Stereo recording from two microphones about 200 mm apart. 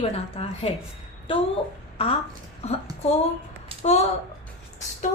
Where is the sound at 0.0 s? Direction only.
30° left (ahead or behind).